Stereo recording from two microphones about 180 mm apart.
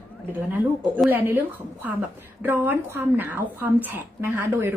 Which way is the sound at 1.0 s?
10° right (ahead or behind).